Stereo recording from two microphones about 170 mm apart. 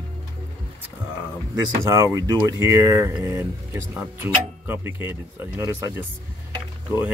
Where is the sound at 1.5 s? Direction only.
15° right (ahead or behind).